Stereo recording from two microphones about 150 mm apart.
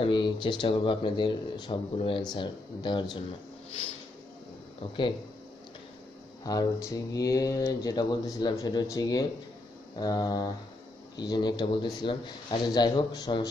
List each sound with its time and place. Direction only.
0.0 s speech: 35° left (ahead or behind)
6.4 s speech: 25° left (ahead or behind)